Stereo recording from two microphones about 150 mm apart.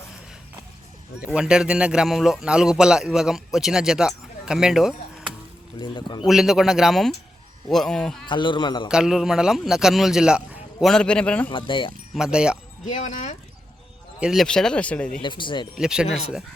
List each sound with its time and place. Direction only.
1.2 s a man's voice: 5° right (ahead or behind)
5.8 s a man's voice: 30° left (ahead or behind)
6.2 s a man's voice: centre (ahead or behind)
8.3 s a man's voice: 30° left (ahead or behind)
8.9 s a man's voice: 5° right (ahead or behind)
11.5 s a man's voice: 35° left (ahead or behind)
12.1 s a man's voice: 5° right (ahead or behind)
12.8 s speech: 55° left (ahead or behind)
14.2 s a man's voice: centre (ahead or behind)
15.2 s a man's voice: 30° left (ahead or behind)
15.7 s a man's voice: 5° right (ahead or behind)